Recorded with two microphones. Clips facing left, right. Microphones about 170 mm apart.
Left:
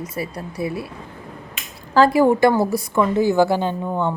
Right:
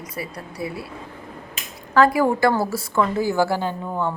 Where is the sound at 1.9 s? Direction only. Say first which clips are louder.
Left 3 dB; 30° left (ahead or behind).